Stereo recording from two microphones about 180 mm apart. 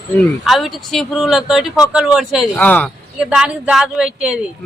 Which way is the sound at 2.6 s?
10° left (ahead or behind).